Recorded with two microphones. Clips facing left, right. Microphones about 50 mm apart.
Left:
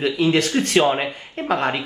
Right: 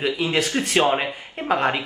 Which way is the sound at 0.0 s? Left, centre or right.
Centre.